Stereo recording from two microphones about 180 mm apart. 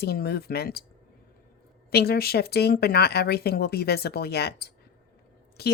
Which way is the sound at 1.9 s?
60° left (ahead or behind).